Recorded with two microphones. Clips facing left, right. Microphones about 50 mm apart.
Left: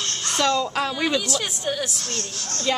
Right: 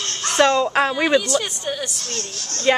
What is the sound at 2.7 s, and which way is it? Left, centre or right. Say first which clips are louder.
Speech: right 7 dB; right.